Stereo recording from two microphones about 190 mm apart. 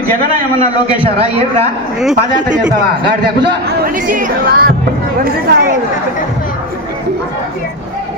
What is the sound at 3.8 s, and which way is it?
Speech, 45° right (ahead or behind).